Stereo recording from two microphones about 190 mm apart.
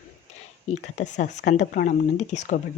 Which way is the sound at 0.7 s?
40° left (ahead or behind).